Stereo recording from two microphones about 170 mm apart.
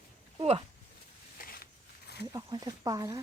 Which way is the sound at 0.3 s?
35° right (ahead or behind).